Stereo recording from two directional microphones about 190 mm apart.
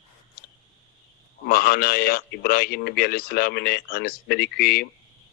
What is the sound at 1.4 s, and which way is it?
Speech, 50° left (ahead or behind).